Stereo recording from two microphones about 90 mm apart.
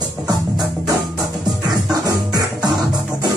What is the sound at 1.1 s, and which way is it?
Music, 5° right (ahead or behind).